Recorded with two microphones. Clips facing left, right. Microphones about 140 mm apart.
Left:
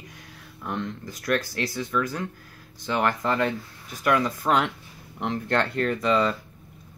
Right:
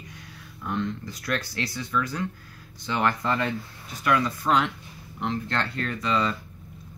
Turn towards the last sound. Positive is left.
turn(degrees=50)  # may be behind; listen again after turning